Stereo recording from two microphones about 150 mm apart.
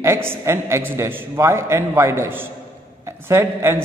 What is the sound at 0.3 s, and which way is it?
A man's voice, 20° right (ahead or behind).